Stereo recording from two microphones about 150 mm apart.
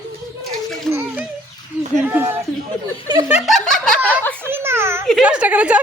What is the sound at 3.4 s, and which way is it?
Snicker, centre (ahead or behind).